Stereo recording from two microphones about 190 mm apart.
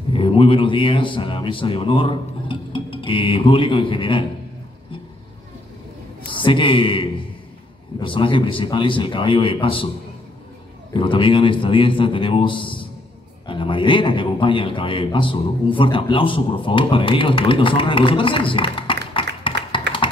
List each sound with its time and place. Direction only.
0.1 s a man's voice: 30° left (ahead or behind)
6.2 s a man's voice: 25° left (ahead or behind)
10.9 s a man's voice: 25° left (ahead or behind)
19.5 s tap: 65° right (ahead or behind)